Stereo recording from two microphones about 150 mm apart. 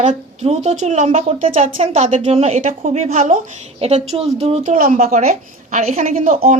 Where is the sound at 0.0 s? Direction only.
50° right (ahead or behind).